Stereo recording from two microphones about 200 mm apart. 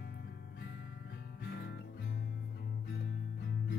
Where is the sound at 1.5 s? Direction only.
55° left (ahead or behind).